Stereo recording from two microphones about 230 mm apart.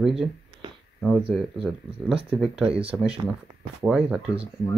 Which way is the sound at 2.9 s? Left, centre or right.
Centre.